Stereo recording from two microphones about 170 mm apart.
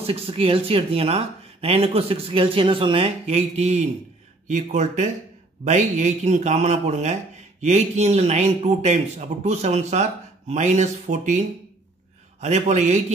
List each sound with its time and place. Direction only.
0.0 s a man's voice: 35° right (ahead or behind)